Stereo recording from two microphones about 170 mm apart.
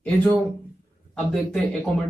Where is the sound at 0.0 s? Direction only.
5° left (ahead or behind).